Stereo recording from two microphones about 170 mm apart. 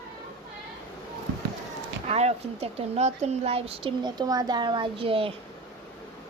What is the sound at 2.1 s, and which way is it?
Speech, 40° right (ahead or behind).